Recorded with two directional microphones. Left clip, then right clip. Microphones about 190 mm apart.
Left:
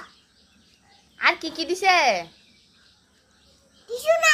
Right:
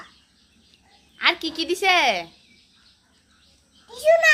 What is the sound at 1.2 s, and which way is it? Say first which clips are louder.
Speech: even; 10° right (ahead or behind).